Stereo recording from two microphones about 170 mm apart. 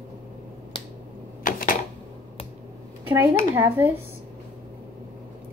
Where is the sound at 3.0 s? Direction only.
10° right (ahead or behind).